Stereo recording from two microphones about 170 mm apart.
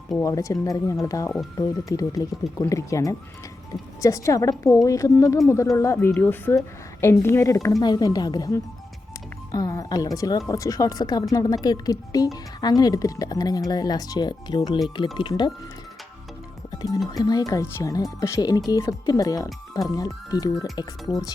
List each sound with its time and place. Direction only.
0.2 s a woman's voice: 20° left (ahead or behind)
16.7 s music: 20° left (ahead or behind)
17.1 s speech: 25° left (ahead or behind)